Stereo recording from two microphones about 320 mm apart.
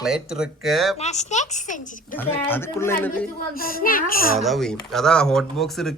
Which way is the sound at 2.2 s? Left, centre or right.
Centre.